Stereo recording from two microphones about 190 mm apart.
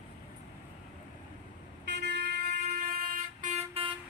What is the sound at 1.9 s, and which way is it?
Vehicle, 60° right (ahead or behind).